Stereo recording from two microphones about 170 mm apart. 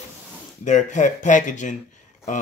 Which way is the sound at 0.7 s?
45° left (ahead or behind).